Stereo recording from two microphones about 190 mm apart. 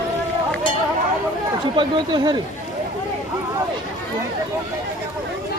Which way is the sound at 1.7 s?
25° right (ahead or behind).